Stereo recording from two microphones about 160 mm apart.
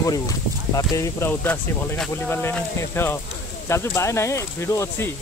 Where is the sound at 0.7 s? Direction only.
20° left (ahead or behind).